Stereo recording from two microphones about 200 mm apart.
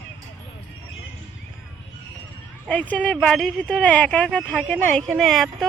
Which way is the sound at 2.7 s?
5° left (ahead or behind).